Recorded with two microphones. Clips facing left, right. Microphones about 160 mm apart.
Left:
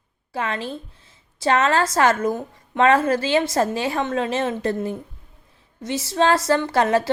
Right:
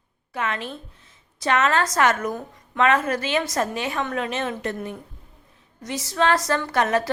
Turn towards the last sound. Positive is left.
turn(degrees=30)  # may be behind; listen again after turning